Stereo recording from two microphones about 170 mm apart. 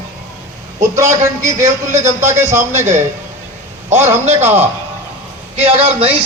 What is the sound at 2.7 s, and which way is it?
Speech, 45° right (ahead or behind).